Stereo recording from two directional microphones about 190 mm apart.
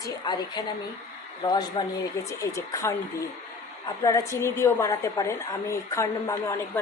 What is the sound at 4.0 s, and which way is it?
A woman's voice, 15° left (ahead or behind).